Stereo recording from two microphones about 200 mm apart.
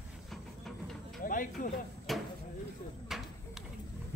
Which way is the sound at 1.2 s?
45° left (ahead or behind).